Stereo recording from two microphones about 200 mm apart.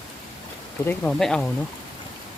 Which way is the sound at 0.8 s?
5° left (ahead or behind).